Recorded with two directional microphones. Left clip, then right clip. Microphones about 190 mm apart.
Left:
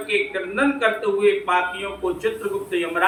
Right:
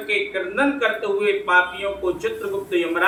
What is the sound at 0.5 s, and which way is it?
A man's voice, 15° right (ahead or behind).